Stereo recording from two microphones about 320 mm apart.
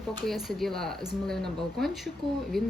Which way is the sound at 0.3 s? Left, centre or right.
Centre.